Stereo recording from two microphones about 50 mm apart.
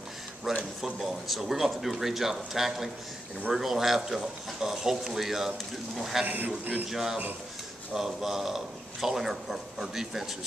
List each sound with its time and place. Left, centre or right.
0.7 s a man's voice: centre
6.2 s speech: right
6.9 s a man's voice: centre